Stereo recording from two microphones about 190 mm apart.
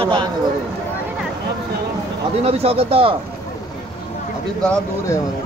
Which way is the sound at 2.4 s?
30° right (ahead or behind).